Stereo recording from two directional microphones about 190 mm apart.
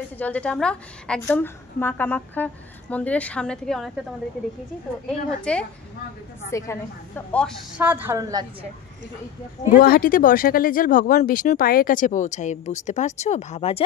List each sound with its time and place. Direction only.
0.2 s a woman's voice: 5° left (ahead or behind)
5.0 s a woman's voice: 5° left (ahead or behind)
7.7 s a woman's voice: 10° right (ahead or behind)
9.7 s speech: 50° left (ahead or behind); by 13.8 s 30° left (ahead or behind)